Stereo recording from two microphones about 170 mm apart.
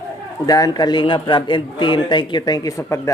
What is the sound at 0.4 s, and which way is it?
A man's voice, 20° left (ahead or behind).